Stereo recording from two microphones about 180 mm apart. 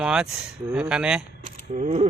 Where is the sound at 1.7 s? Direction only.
40° right (ahead or behind).